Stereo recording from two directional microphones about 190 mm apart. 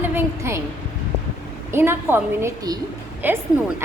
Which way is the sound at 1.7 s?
10° right (ahead or behind).